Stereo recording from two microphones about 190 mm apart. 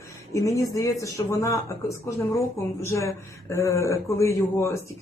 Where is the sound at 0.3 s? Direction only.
15° left (ahead or behind).